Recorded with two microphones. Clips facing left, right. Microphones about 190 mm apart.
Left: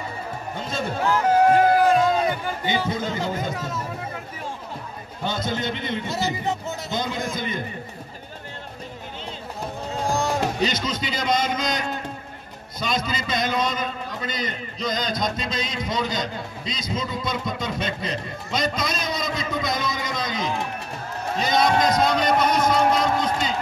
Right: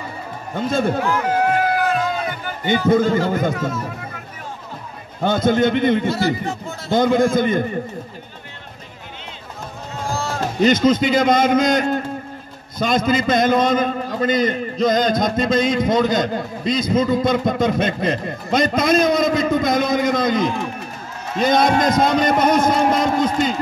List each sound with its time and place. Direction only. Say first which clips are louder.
0.6 s a man's voice: right 10 dB; 55° right (ahead or behind)
1.0 s music: left 1 dB; 35° left (ahead or behind)
2.6 s a man's voice: right 11 dB; 55° right (ahead or behind)
5.2 s a man's voice: right 10 dB; 50° right (ahead or behind)
6.1 s speech: right 5 dB; 20° left (ahead or behind)
6.9 s a man's voice: right 14 dB; 50° right (ahead or behind)
10.1 s a sound: left 1 dB; 15° left (ahead or behind)
10.6 s a man's voice: right 11 dB; 50° right (ahead or behind)